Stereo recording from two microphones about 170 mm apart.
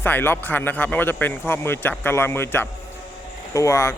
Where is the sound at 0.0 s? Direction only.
10° left (ahead or behind).